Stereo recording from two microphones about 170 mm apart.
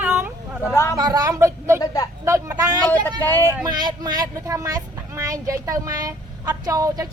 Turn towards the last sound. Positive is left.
turn(degrees=-20)  # may be behind; listen again after turning